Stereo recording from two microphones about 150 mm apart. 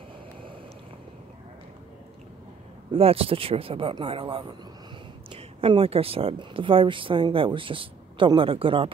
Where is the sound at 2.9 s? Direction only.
40° right (ahead or behind).